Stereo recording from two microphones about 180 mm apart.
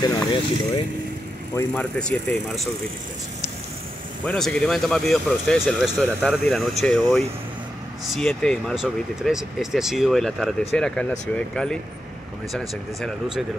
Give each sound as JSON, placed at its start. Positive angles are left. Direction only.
{"t": 0.0, "sound": "speech", "side_deg": 25}
{"t": 1.5, "sound": "speech", "side_deg": 10}
{"t": 4.3, "sound": "speech", "side_deg": 5}